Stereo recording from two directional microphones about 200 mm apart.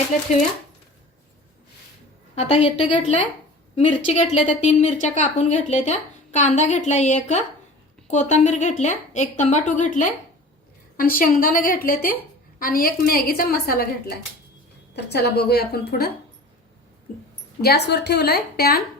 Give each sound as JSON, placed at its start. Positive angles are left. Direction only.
{"t": 2.3, "sound": "a woman's voice", "side_deg": 30}
{"t": 14.9, "sound": "a woman's voice", "side_deg": 55}
{"t": 17.6, "sound": "a woman's voice", "side_deg": 55}